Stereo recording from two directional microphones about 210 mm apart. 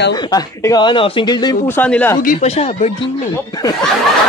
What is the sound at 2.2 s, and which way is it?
Speech, 35° left (ahead or behind).